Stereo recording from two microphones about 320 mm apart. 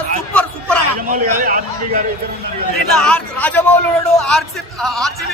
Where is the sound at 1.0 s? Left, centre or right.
Right.